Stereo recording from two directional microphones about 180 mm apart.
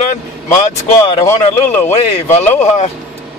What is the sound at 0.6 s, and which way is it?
Speech, 35° left (ahead or behind).